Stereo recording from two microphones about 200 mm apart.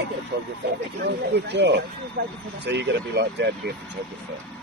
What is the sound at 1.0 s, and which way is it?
Speech, 55° right (ahead or behind).